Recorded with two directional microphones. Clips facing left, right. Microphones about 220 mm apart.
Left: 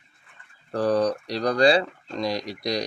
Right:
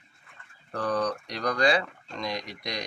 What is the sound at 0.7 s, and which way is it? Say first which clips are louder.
Speech: left 6 dB; 35° left (ahead or behind).